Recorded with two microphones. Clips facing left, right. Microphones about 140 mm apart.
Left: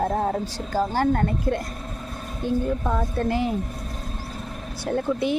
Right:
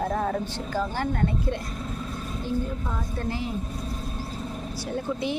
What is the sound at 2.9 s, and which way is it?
Speech, 65° left (ahead or behind).